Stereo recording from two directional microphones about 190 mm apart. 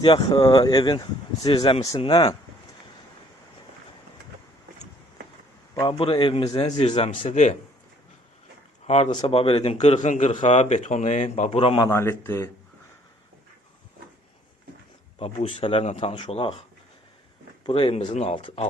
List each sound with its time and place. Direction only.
0.0 s speech: 25° left (ahead or behind)
5.8 s speech: 30° left (ahead or behind)
9.0 s speech: 30° left (ahead or behind)
11.9 s speech: 15° left (ahead or behind)
15.2 s speech: 30° left (ahead or behind)
17.7 s speech: 30° left (ahead or behind)